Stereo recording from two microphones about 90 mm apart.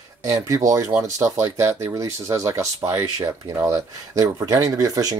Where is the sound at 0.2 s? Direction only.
40° right (ahead or behind).